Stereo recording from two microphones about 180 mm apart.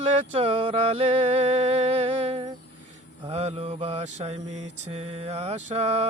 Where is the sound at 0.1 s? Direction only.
35° right (ahead or behind).